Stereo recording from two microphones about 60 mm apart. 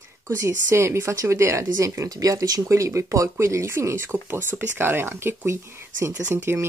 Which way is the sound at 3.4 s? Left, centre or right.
Right.